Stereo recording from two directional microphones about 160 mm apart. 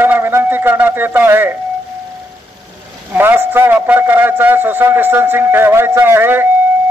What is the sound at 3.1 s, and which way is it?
A man's voice, 15° right (ahead or behind).